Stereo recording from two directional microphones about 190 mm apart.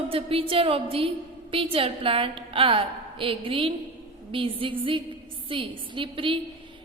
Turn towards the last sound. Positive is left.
turn(degrees=-25)  # may be behind; listen again after turning